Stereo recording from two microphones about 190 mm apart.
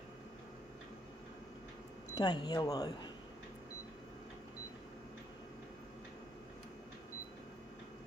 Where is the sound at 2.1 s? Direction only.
20° left (ahead or behind).